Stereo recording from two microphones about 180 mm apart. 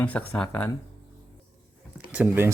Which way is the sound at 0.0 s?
10° left (ahead or behind).